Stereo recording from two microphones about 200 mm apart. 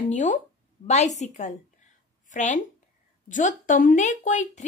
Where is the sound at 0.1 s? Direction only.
35° left (ahead or behind).